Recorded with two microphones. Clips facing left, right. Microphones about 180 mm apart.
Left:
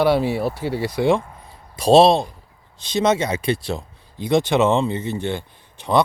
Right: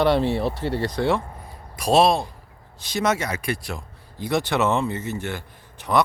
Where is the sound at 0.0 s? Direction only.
5° left (ahead or behind).